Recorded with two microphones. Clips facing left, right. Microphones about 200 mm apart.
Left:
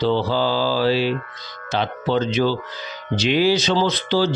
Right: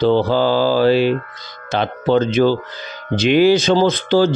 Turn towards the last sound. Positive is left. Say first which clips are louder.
# right 5 dB
turn(degrees=-50)  # may be behind; listen again after turning